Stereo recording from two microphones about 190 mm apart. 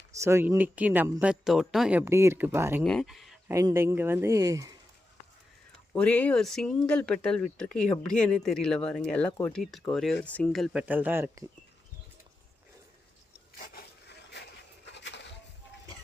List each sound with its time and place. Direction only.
0.1 s speech: 15° right (ahead or behind)
2.8 s speech: centre (ahead or behind)
3.5 s speech: 15° right (ahead or behind)
5.9 s speech: 5° left (ahead or behind); by 11.4 s 10° right (ahead or behind)
14.9 s a sound: 65° left (ahead or behind)